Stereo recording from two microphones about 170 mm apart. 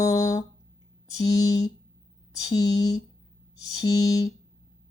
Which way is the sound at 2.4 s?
20° left (ahead or behind).